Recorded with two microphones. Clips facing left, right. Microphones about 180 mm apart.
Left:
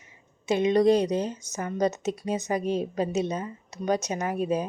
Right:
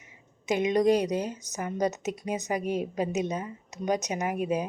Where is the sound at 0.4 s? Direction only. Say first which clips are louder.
Left 3 dB; 15° right (ahead or behind).